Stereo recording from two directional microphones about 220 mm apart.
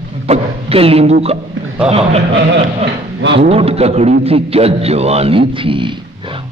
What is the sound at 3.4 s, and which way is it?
A man's voice, 25° right (ahead or behind).